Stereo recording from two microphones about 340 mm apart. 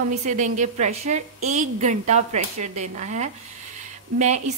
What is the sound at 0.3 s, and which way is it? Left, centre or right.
A woman's voice, right.